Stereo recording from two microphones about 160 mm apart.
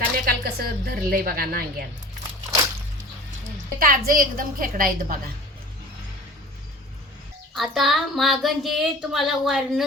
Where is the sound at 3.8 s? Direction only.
60° right (ahead or behind).